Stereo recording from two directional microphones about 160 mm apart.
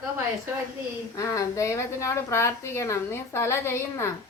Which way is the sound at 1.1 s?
20° left (ahead or behind).